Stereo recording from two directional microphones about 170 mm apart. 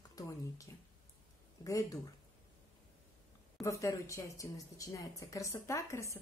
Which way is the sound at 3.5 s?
20° left (ahead or behind).